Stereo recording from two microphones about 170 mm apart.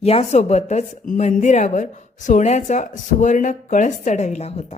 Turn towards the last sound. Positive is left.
turn(degrees=40)  # may be behind; listen again after turning